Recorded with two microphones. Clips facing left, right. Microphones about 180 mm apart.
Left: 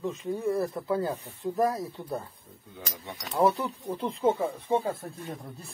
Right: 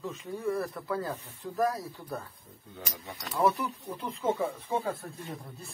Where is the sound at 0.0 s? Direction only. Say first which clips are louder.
Left 4 dB; 25° left (ahead or behind).